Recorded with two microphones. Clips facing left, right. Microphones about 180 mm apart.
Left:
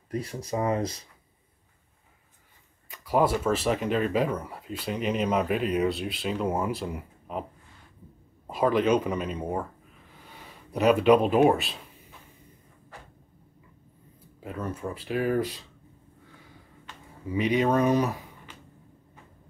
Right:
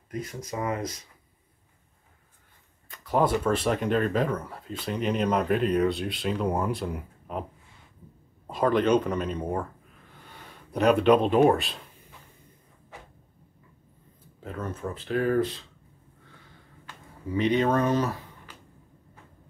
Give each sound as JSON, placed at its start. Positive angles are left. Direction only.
{"t": 0.1, "sound": "speech", "side_deg": 30}
{"t": 2.9, "sound": "speech", "side_deg": 5}
{"t": 8.5, "sound": "speech", "side_deg": 5}
{"t": 14.4, "sound": "speech", "side_deg": 10}
{"t": 17.3, "sound": "speech", "side_deg": 10}